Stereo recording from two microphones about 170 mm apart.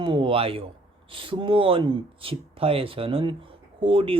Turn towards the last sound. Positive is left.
turn(degrees=-30)  # may be behind; listen again after turning